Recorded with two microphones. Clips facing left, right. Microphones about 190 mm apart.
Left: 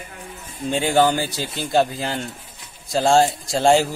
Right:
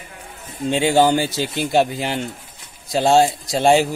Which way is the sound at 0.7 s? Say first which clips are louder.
Right 2 dB; 25° right (ahead or behind).